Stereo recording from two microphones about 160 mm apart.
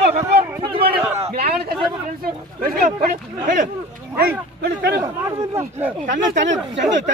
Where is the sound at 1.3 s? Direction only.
75° right (ahead or behind).